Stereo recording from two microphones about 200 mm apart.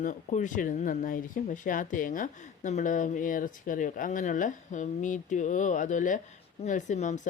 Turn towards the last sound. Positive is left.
turn(degrees=35)  # may be behind; listen again after turning